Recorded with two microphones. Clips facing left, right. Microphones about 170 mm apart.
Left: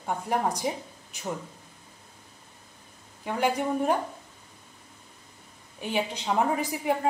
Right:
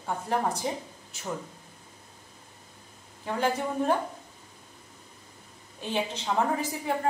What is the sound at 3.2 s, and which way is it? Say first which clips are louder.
Speech: left 2 dB; 15° left (ahead or behind).